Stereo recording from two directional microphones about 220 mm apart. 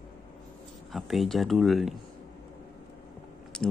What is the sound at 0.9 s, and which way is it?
Speech, centre (ahead or behind).